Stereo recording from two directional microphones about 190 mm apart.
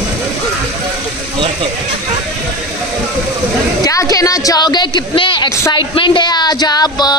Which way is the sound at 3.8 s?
15° left (ahead or behind).